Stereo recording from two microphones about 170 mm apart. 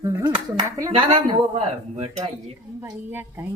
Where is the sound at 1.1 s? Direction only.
30° right (ahead or behind).